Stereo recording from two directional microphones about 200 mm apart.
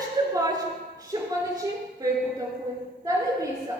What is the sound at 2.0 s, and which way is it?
Speech, 20° right (ahead or behind).